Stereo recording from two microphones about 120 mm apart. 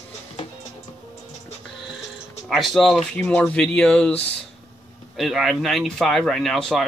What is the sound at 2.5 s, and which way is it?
Speech, centre (ahead or behind).